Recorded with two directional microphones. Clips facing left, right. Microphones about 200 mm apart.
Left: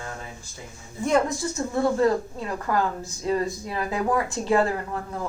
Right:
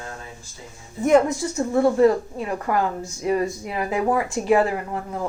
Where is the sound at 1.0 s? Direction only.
20° right (ahead or behind).